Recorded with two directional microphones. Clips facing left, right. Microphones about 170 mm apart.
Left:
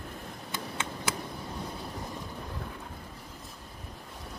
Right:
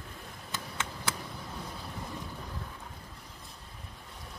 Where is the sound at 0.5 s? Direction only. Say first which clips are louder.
Left 2 dB; 15° left (ahead or behind).